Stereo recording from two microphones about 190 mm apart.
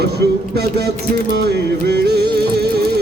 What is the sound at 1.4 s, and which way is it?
Music, 60° right (ahead or behind).